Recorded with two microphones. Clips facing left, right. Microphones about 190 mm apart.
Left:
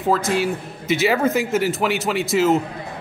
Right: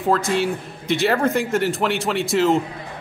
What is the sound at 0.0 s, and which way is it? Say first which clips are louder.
A man's voice: even; centre (ahead or behind).